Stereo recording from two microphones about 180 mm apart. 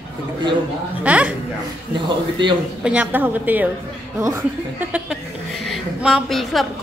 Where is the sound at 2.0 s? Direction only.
25° right (ahead or behind).